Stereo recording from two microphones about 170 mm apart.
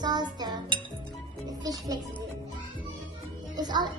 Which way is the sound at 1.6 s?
20° right (ahead or behind).